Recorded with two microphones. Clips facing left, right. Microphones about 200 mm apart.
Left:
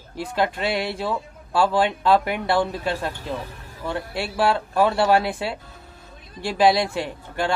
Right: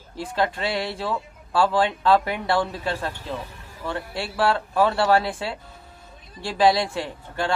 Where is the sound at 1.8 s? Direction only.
20° left (ahead or behind).